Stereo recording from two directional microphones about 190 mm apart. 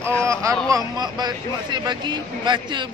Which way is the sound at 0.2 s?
15° right (ahead or behind).